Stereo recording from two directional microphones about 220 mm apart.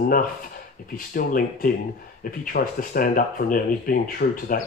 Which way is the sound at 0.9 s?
40° left (ahead or behind).